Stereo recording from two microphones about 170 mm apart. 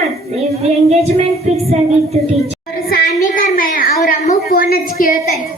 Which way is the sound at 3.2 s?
55° left (ahead or behind).